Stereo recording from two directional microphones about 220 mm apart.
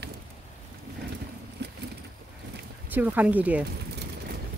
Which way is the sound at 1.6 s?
50° right (ahead or behind).